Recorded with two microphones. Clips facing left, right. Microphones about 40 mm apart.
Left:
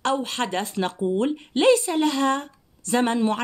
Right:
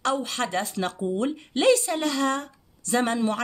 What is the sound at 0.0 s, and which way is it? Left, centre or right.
Speech, left.